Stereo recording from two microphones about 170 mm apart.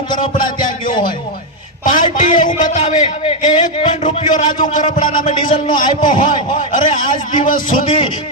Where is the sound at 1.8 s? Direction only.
50° left (ahead or behind).